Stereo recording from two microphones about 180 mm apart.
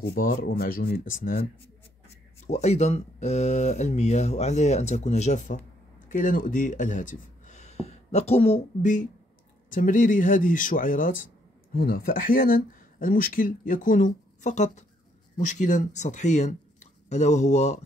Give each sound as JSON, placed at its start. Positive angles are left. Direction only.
{"t": 0.1, "sound": "speech", "side_deg": 55}
{"t": 2.4, "sound": "speech", "side_deg": 40}